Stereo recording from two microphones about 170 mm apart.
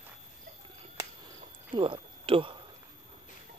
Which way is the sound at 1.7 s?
30° right (ahead or behind).